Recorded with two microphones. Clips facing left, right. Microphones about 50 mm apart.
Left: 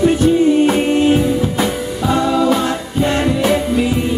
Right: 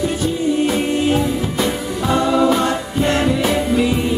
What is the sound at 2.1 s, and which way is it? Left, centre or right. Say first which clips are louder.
Music: even; centre.